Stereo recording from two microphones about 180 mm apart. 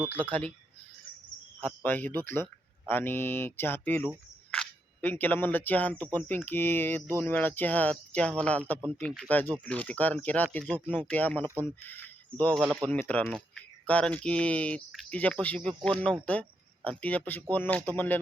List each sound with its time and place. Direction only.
0.1 s speech: 10° left (ahead or behind)
1.6 s speech: 10° left (ahead or behind)
12.9 s speech: 10° left (ahead or behind)